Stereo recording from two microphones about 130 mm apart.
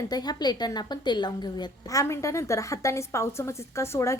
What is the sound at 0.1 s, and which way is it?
A woman's voice, 30° left (ahead or behind).